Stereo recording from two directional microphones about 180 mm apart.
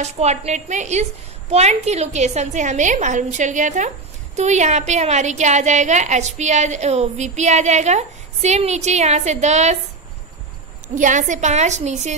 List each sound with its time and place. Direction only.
0.0 s a woman's voice: 35° right (ahead or behind)
11.0 s a woman's voice: 45° right (ahead or behind)